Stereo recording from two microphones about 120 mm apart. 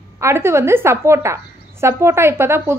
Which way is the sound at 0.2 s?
20° right (ahead or behind).